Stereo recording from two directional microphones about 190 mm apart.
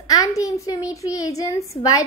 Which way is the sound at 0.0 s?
20° left (ahead or behind).